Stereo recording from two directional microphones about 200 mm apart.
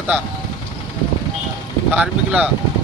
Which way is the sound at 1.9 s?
5° right (ahead or behind).